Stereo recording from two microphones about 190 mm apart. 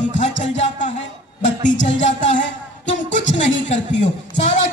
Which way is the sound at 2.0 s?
40° left (ahead or behind).